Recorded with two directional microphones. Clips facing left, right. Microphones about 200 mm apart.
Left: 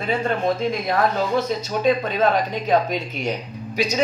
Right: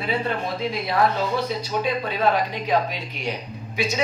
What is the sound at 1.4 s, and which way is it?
Speech, 45° left (ahead or behind).